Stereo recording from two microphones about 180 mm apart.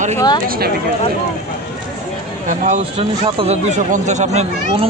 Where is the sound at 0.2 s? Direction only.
25° left (ahead or behind).